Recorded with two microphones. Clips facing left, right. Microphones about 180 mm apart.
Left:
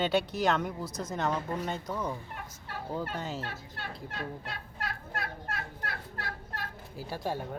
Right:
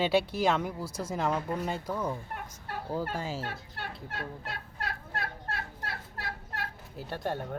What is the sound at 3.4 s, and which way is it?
Fowl, 50° right (ahead or behind).